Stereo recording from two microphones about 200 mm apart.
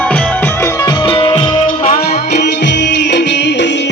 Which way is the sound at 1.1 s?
25° left (ahead or behind).